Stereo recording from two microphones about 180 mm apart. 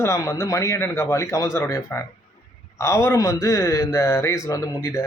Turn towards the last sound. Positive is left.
turn(degrees=15)  # may be behind; listen again after turning